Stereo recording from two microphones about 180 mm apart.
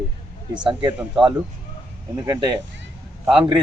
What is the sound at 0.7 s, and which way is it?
Speech, 30° right (ahead or behind).